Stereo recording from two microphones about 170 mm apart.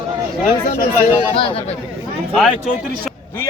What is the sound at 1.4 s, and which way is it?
Speech, 30° left (ahead or behind).